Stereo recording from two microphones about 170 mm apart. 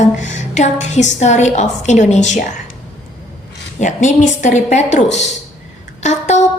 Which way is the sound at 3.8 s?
45° left (ahead or behind).